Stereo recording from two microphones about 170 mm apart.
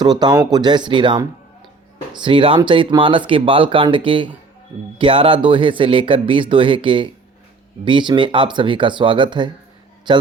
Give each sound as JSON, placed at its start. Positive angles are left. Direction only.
{"t": 0.0, "sound": "a man's voice", "side_deg": -25}